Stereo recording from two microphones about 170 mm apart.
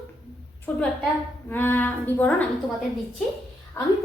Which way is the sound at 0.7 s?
10° left (ahead or behind).